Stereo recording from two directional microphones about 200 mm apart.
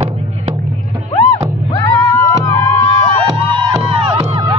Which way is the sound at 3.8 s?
25° right (ahead or behind).